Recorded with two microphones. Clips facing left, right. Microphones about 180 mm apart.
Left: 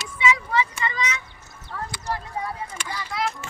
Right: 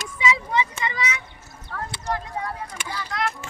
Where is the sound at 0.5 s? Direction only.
20° right (ahead or behind).